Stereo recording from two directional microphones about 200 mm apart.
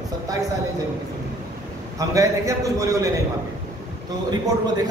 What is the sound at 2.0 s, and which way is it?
A man's voice, 15° right (ahead or behind).